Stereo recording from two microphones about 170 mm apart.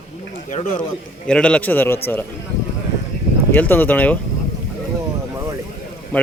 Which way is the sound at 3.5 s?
10° left (ahead or behind).